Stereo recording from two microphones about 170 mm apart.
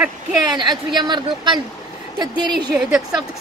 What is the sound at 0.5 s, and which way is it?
Speech, 25° right (ahead or behind).